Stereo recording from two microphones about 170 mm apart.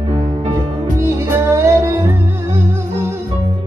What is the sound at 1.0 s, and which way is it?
Music, 15° right (ahead or behind).